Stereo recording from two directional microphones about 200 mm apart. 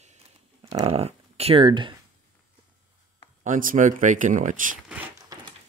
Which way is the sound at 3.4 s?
40° right (ahead or behind).